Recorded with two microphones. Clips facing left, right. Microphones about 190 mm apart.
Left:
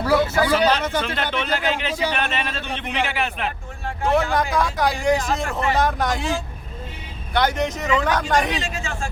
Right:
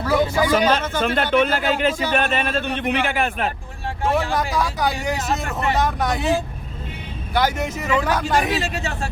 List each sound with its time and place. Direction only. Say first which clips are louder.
0.1 s a sound: even; 15° right (ahead or behind)
1.0 s a man's voice: right 7 dB; 50° right (ahead or behind)
4.1 s speech: left 2 dB; centre (ahead or behind)
7.3 s speech: even; 10° right (ahead or behind)
8.7 s speech: right 2 dB; 40° right (ahead or behind)